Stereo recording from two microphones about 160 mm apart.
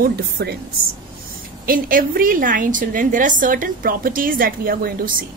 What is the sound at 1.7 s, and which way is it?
A woman's voice, 60° right (ahead or behind).